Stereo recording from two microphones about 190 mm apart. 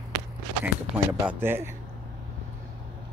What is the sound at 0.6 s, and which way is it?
Speech, 10° right (ahead or behind).